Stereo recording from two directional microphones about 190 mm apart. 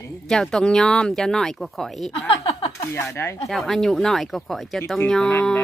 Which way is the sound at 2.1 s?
30° left (ahead or behind).